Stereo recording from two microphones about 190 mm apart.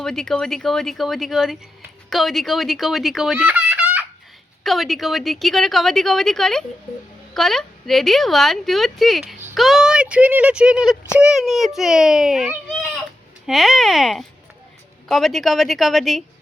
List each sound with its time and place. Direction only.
0.0 s speech: 5° left (ahead or behind)
2.0 s fowl: centre (ahead or behind)
4.6 s speech: centre (ahead or behind)